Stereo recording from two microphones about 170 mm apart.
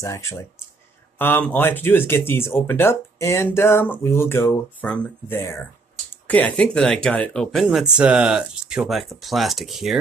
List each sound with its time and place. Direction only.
0.0 s speech: 15° left (ahead or behind); by 9.9 s centre (ahead or behind)